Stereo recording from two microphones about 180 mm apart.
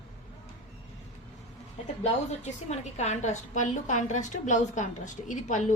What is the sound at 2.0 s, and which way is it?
A woman's voice, 40° left (ahead or behind).